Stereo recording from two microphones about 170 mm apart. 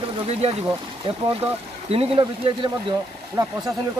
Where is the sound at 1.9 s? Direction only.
30° right (ahead or behind).